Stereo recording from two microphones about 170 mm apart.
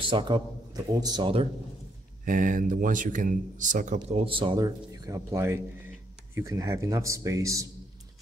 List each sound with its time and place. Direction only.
0.0 s speech: 30° right (ahead or behind)
2.2 s a man's voice: 50° right (ahead or behind); by 7.6 s 20° right (ahead or behind)